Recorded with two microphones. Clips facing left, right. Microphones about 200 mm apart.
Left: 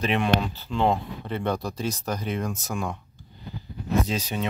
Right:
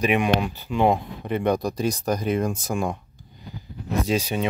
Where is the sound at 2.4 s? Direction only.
30° right (ahead or behind).